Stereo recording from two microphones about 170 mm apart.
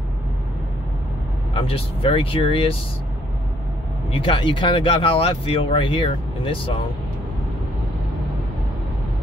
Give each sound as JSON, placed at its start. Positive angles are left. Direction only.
{"t": 1.5, "sound": "speech", "side_deg": 35}
{"t": 4.1, "sound": "speech", "side_deg": 30}